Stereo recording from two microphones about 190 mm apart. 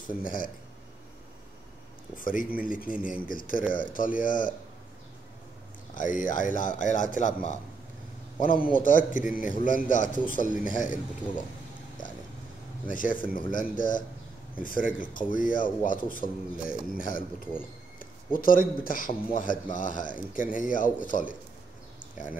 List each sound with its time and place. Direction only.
0.2 s speech: 45° left (ahead or behind)
2.1 s speech: 45° left (ahead or behind)
5.9 s speech: 45° left (ahead or behind)
12.0 s a sound: 45° left (ahead or behind)
12.8 s speech: 45° left (ahead or behind)